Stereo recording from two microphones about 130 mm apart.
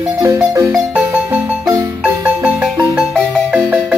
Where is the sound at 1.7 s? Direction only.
15° right (ahead or behind).